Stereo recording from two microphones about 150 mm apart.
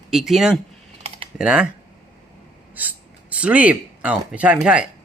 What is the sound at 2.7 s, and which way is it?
Speech, 10° right (ahead or behind).